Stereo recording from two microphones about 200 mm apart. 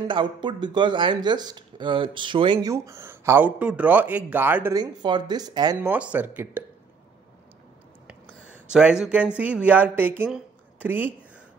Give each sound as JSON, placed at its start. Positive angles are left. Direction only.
{"t": 0.1, "sound": "speech", "side_deg": -25}
{"t": 4.7, "sound": "speech", "side_deg": -20}
{"t": 8.6, "sound": "speech", "side_deg": -5}